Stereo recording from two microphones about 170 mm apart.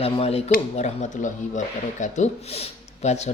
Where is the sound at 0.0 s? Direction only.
35° left (ahead or behind).